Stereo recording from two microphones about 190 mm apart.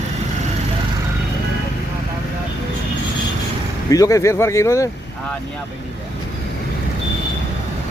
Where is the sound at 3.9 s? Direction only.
15° left (ahead or behind).